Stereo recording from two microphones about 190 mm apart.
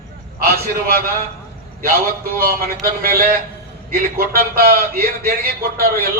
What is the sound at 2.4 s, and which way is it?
A man's voice, 50° right (ahead or behind).